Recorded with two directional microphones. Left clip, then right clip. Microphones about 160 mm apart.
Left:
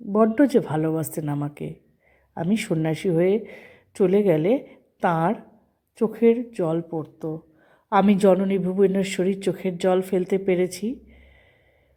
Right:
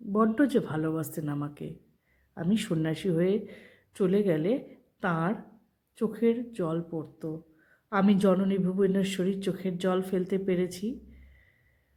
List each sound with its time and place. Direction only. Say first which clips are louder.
0.1 s a woman's voice: left 7 dB; 20° left (ahead or behind)